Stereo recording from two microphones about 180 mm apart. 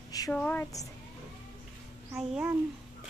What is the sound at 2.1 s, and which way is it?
Speech, 10° right (ahead or behind).